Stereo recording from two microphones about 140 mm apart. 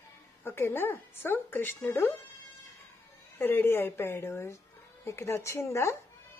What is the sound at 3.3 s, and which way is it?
A woman's voice, 15° left (ahead or behind).